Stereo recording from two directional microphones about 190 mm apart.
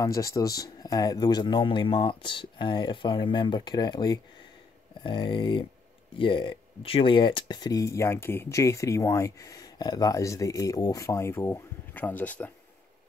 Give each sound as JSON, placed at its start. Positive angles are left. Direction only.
{"t": 0.0, "sound": "speech", "side_deg": 15}